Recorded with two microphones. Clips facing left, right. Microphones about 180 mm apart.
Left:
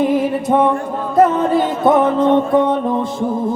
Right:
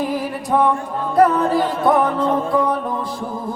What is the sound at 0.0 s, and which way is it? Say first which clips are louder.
Music: left 7 dB; 25° left (ahead or behind).